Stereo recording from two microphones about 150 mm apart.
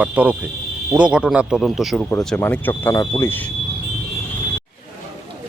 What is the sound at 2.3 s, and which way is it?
Speech, 15° left (ahead or behind).